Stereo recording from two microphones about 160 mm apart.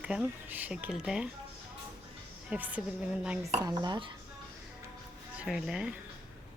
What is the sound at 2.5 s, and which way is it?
Speech, 10° right (ahead or behind).